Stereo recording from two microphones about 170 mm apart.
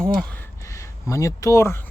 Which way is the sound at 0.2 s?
10° left (ahead or behind).